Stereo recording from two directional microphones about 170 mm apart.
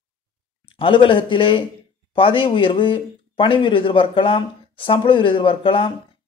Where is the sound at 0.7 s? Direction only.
30° left (ahead or behind).